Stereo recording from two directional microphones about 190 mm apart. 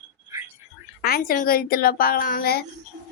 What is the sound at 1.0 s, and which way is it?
A woman's voice, 50° left (ahead or behind).